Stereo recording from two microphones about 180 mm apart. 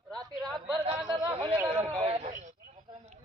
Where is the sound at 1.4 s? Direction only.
15° right (ahead or behind).